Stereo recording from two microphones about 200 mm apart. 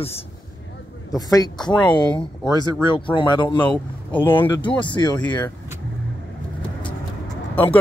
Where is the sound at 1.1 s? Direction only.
20° left (ahead or behind).